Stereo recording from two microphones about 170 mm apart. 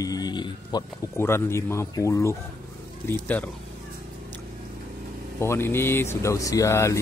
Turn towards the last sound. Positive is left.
turn(degrees=15)  # may be behind; listen again after turning